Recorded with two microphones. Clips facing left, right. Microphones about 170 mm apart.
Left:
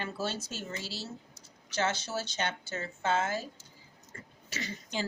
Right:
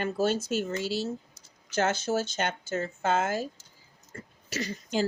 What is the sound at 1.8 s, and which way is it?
A woman's voice, 50° right (ahead or behind).